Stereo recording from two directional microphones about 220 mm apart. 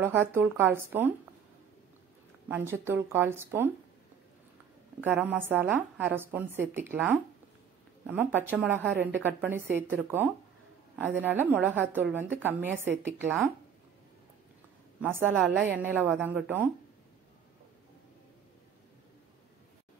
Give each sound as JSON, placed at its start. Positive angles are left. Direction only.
{"t": 0.0, "sound": "a woman's voice", "side_deg": -10}
{"t": 2.4, "sound": "a woman's voice", "side_deg": -10}
{"t": 5.0, "sound": "a woman's voice", "side_deg": -10}
{"t": 15.0, "sound": "a woman's voice", "side_deg": -10}